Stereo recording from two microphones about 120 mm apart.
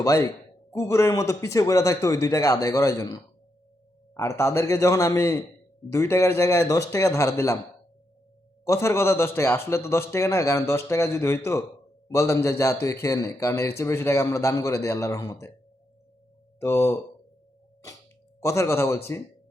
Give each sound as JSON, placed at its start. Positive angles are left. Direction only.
{"t": 0.0, "sound": "a man's voice", "side_deg": 30}
{"t": 8.6, "sound": "speech", "side_deg": 25}
{"t": 16.6, "sound": "speech", "side_deg": 25}
{"t": 18.3, "sound": "speech", "side_deg": 25}